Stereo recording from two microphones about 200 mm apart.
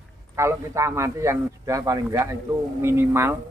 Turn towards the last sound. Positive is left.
turn(degrees=-10)  # may be behind; listen again after turning